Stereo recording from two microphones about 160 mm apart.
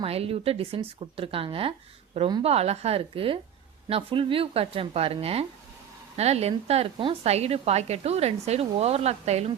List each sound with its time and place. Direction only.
0.0 s a woman's voice: 35° right (ahead or behind)